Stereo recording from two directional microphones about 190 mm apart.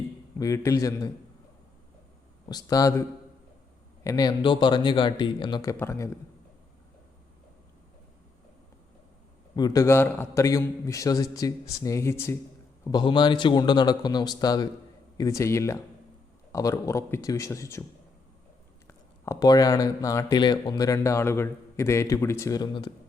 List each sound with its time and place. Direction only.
0.3 s speech: 15° left (ahead or behind)
2.5 s a man's voice: 20° left (ahead or behind)
4.0 s a man's voice: 20° left (ahead or behind)
9.6 s speech: 20° left (ahead or behind)
12.8 s a man's voice: 25° left (ahead or behind)
18.9 s speech: 15° left (ahead or behind)